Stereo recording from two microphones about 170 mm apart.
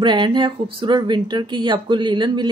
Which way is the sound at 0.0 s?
25° right (ahead or behind).